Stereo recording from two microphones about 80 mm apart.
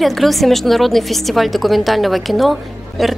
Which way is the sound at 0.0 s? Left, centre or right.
Centre.